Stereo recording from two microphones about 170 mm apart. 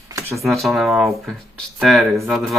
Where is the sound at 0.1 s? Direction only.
15° right (ahead or behind).